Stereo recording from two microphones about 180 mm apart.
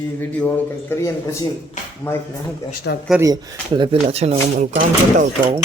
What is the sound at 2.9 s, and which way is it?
Speech, 60° left (ahead or behind).